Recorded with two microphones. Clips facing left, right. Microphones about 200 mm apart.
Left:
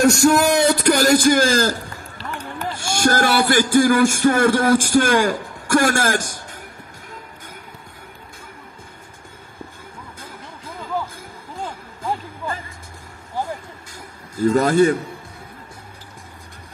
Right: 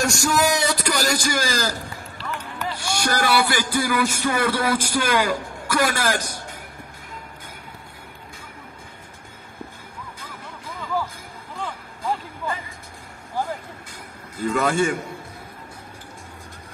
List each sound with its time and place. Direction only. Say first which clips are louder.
0.0 s a sound: left 7 dB; 60° left (ahead or behind)
2.6 s speech: left 6 dB; 45° left (ahead or behind)
14.4 s a man's voice: left 6 dB; 40° left (ahead or behind)